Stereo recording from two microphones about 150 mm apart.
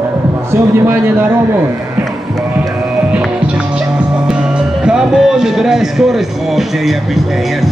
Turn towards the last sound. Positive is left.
turn(degrees=0)  # may be behind; listen again after turning